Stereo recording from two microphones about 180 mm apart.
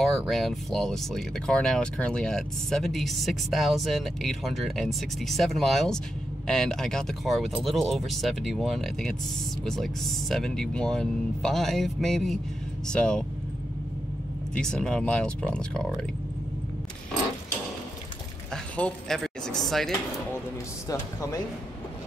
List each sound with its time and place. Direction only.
0.0 s speech: centre (ahead or behind)
14.5 s speech: 5° left (ahead or behind)
18.5 s a sound: 5° left (ahead or behind)
20.9 s speech: 15° left (ahead or behind)